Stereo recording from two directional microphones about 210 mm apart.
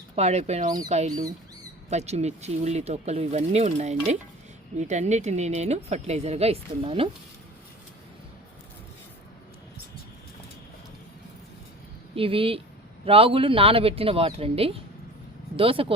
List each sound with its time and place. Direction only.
0.2 s speech: 30° right (ahead or behind)
12.1 s speech: 25° right (ahead or behind)